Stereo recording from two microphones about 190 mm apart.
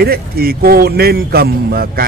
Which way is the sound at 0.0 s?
50° right (ahead or behind).